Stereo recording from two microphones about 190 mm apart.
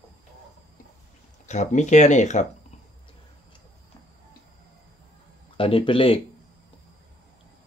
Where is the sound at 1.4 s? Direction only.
40° left (ahead or behind).